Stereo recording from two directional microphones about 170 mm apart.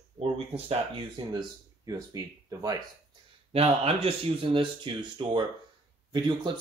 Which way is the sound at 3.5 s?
35° right (ahead or behind).